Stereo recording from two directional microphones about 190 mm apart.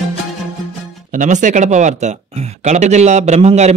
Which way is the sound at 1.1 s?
40° right (ahead or behind).